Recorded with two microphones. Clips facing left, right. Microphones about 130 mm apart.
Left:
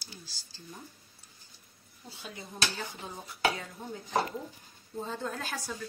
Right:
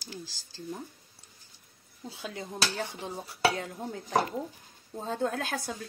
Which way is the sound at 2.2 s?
90° right.